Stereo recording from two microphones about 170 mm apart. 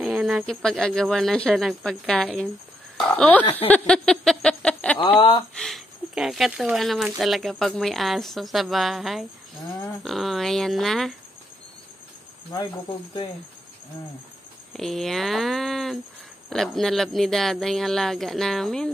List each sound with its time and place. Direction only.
0.0 s a sound: centre (ahead or behind)
0.5 s speech: 5° left (ahead or behind)
3.5 s a sound: 10° left (ahead or behind)
4.9 s speech: 30° left (ahead or behind)
5.5 s speech: 5° left (ahead or behind)
14.7 s speech: centre (ahead or behind)